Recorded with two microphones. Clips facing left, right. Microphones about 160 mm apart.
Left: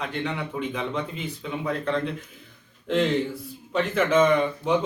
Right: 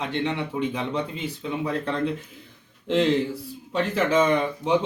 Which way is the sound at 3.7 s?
35° right (ahead or behind).